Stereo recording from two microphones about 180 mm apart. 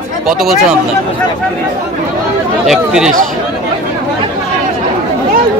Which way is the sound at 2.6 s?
Centre (ahead or behind).